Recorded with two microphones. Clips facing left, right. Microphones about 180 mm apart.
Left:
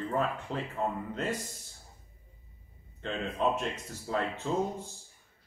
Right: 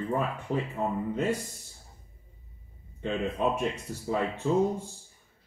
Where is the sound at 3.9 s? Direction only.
15° right (ahead or behind).